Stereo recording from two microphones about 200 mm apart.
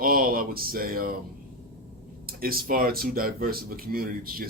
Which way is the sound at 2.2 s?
50° right (ahead or behind).